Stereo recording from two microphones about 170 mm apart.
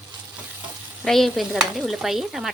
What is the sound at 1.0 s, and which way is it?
Stir, centre (ahead or behind).